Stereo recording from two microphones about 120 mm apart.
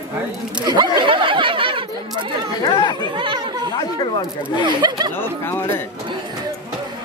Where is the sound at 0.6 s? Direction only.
35° right (ahead or behind).